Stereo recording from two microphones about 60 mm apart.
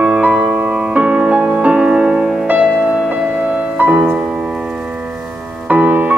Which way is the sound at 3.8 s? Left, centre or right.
Right.